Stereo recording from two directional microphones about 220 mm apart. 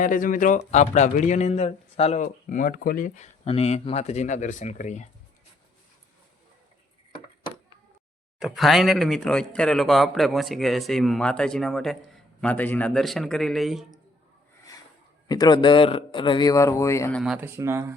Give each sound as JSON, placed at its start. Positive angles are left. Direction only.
{"t": 0.0, "sound": "speech", "side_deg": 40}
{"t": 8.4, "sound": "a man's voice", "side_deg": 0}
{"t": 15.3, "sound": "a man's voice", "side_deg": 20}